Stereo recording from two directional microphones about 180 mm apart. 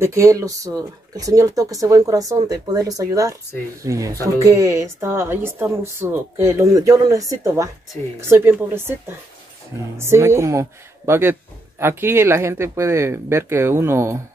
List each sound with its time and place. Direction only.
0.0 s a woman's voice: 15° right (ahead or behind)
9.9 s a woman's voice: 15° right (ahead or behind)